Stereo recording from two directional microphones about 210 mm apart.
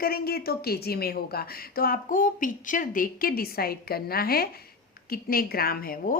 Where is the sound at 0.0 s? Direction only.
45° left (ahead or behind).